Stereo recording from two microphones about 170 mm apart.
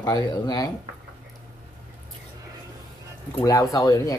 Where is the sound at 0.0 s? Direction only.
25° left (ahead or behind).